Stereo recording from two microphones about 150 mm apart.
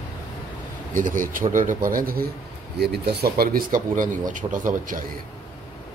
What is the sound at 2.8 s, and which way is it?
Speech, 90° right.